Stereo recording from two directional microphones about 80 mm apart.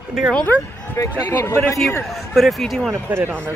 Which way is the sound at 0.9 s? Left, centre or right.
Left.